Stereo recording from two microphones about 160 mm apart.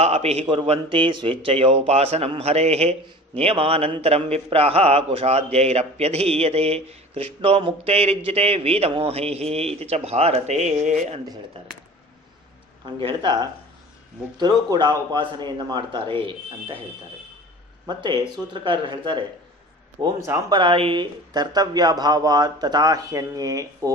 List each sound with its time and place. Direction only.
0.0 s a man's voice: 40° right (ahead or behind)
12.8 s speech: 30° right (ahead or behind)
17.8 s speech: 25° right (ahead or behind)